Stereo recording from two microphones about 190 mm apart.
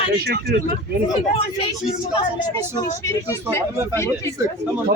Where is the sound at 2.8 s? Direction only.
15° left (ahead or behind).